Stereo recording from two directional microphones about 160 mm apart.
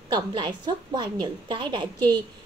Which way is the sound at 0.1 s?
30° right (ahead or behind).